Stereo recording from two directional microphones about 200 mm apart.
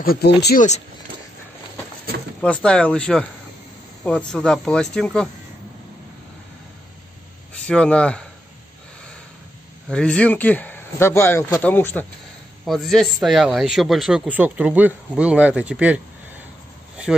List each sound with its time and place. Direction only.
0.0 s speech: 50° left (ahead or behind)
2.4 s a man's voice: 5° left (ahead or behind)
4.3 s a man's voice: 5° left (ahead or behind)
7.6 s a man's voice: 5° left (ahead or behind)
9.8 s a man's voice: 5° left (ahead or behind)